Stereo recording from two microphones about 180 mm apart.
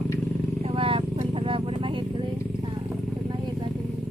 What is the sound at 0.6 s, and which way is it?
Vehicle, 30° right (ahead or behind).